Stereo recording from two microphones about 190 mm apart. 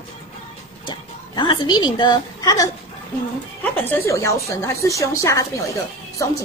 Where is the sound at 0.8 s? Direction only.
25° left (ahead or behind).